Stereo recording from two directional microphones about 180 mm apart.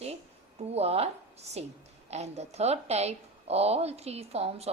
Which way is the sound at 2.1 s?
35° right (ahead or behind).